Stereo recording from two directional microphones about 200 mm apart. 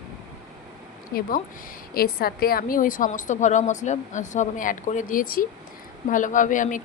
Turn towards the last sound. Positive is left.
turn(degrees=40)  # may be behind; listen again after turning